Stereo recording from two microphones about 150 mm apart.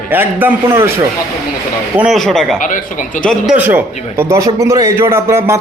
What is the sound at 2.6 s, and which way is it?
Speech, 60° left (ahead or behind).